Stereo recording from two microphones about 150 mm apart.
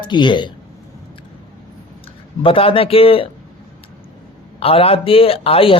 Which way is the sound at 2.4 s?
35° left (ahead or behind).